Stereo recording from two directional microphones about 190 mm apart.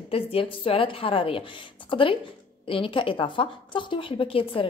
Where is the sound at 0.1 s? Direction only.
30° left (ahead or behind).